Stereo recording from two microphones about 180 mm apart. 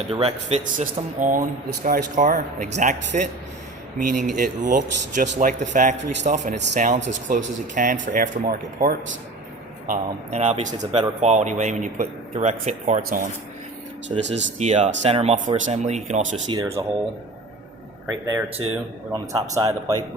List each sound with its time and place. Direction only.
0.1 s a man's voice: 35° right (ahead or behind); by 9.0 s 55° right (ahead or behind)
9.9 s a man's voice: 40° right (ahead or behind)
10.7 s a man's voice: 25° right (ahead or behind)
11.2 s a man's voice: 40° right (ahead or behind)
14.3 s speech: 85° right
14.6 s a man's voice: 40° right (ahead or behind)
16.5 s a man's voice: 20° right (ahead or behind)
18.3 s a man's voice: 15° right (ahead or behind)